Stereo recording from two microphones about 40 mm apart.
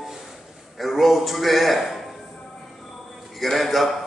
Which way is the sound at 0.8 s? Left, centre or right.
Centre.